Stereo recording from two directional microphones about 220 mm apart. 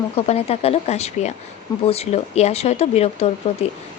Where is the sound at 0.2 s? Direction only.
25° left (ahead or behind).